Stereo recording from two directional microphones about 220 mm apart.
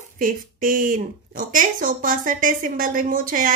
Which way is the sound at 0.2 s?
40° right (ahead or behind).